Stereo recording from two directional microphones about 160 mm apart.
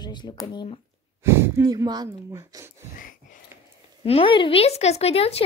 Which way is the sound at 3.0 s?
55° left (ahead or behind).